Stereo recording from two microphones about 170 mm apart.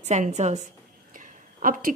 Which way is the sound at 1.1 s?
55° right (ahead or behind).